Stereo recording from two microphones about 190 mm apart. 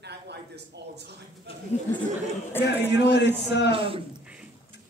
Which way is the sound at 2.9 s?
65° left (ahead or behind).